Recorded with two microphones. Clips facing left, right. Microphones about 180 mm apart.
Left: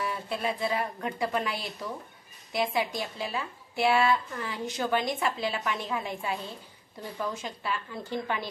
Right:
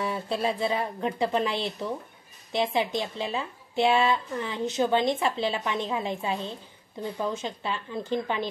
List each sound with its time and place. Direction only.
0.0 s a woman's voice: 25° right (ahead or behind)